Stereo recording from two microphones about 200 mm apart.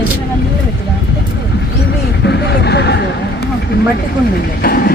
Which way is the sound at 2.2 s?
60° left (ahead or behind).